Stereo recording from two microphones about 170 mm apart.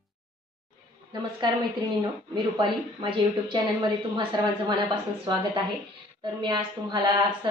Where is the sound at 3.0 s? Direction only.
25° right (ahead or behind).